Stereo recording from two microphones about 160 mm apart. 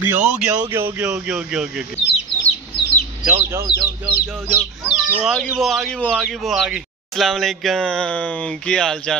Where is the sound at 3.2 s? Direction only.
15° right (ahead or behind).